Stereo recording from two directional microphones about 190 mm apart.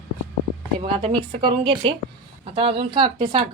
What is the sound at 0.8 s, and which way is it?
A woman's voice, 25° right (ahead or behind).